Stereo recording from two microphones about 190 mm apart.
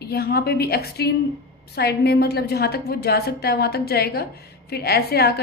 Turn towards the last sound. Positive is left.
turn(degrees=55)  # may be behind; listen again after turning